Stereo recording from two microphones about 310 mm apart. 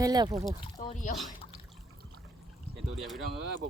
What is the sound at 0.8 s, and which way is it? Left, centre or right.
Speech, left.